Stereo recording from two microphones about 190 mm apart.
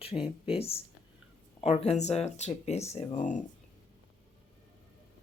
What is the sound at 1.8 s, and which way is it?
Speech, 35° left (ahead or behind).